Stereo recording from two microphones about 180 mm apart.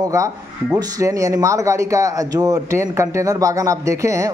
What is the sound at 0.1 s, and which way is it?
Speech, 20° right (ahead or behind).